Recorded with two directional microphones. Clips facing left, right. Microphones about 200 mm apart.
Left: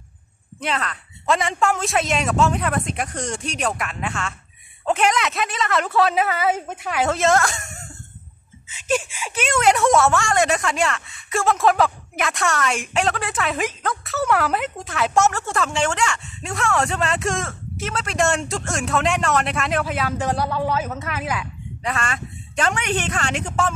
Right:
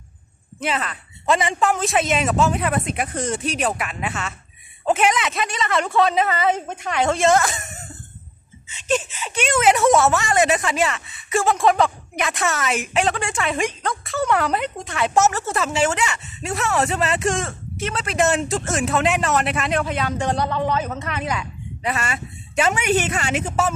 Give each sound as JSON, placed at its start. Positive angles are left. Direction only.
{"t": 0.6, "sound": "speech", "side_deg": -5}
{"t": 8.6, "sound": "speech", "side_deg": 10}
{"t": 21.9, "sound": "a woman's voice", "side_deg": -5}